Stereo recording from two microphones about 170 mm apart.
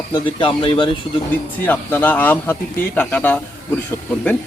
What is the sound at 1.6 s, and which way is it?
Speech, 10° left (ahead or behind).